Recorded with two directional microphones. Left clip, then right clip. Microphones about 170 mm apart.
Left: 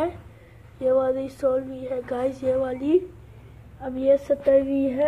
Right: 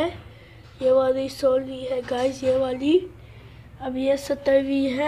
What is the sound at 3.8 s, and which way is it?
Speech, 15° right (ahead or behind).